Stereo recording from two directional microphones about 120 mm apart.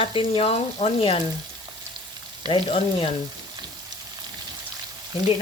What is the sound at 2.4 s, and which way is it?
Speech, 40° right (ahead or behind).